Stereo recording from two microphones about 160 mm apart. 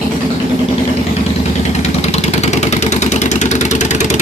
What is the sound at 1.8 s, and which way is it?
Vehicle, 45° left (ahead or behind).